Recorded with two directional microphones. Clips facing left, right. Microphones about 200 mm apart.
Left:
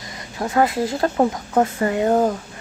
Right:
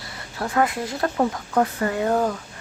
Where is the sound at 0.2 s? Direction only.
15° left (ahead or behind).